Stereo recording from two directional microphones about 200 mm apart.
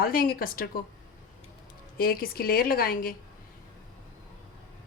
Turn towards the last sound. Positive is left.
turn(degrees=45)  # may be behind; listen again after turning